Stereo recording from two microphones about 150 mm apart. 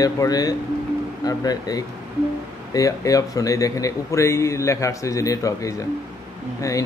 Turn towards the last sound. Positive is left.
turn(degrees=20)  # may be behind; listen again after turning